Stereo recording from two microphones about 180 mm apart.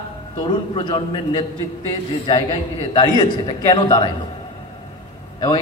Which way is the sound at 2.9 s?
25° left (ahead or behind).